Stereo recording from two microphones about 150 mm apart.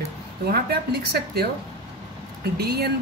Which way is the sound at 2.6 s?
90° right.